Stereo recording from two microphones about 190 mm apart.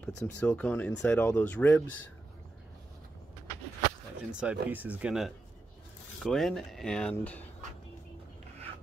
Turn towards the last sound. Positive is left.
turn(degrees=10)  # may be behind; listen again after turning